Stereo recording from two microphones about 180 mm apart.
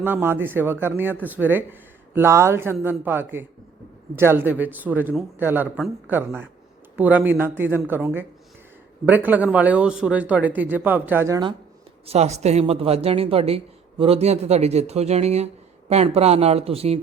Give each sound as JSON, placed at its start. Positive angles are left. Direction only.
{"t": 0.0, "sound": "speech", "side_deg": -10}
{"t": 12.0, "sound": "speech", "side_deg": -35}